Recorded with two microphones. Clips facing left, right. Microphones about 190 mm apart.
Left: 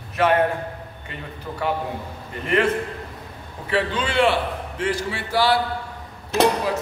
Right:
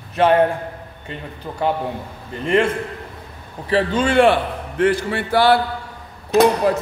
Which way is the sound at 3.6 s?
40° right (ahead or behind).